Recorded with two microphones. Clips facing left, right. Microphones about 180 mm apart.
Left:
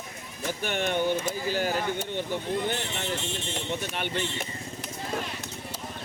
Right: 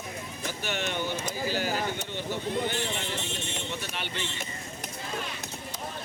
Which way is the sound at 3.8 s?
50° left (ahead or behind).